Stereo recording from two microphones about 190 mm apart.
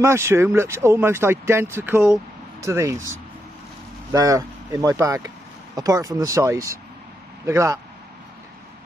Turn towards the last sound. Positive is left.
turn(degrees=-15)  # may be behind; listen again after turning